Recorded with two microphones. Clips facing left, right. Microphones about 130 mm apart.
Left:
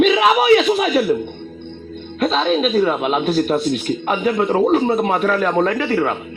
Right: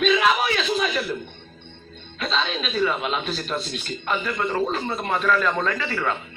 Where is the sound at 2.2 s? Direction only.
50° left (ahead or behind).